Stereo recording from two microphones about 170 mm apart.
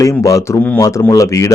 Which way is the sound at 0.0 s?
20° left (ahead or behind).